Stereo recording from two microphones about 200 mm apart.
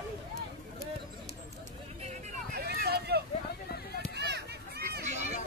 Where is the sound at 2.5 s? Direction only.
50° right (ahead or behind).